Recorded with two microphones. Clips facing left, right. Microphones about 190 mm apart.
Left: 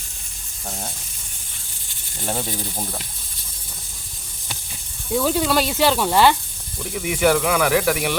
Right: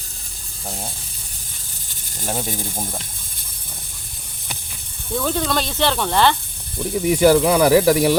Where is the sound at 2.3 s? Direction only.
10° right (ahead or behind).